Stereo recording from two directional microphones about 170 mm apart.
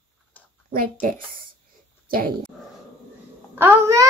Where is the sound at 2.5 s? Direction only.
Centre (ahead or behind).